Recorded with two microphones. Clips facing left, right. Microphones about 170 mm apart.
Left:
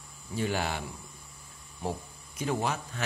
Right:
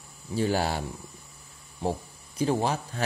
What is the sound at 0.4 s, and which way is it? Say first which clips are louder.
Speech: right 5 dB; 35° right (ahead or behind).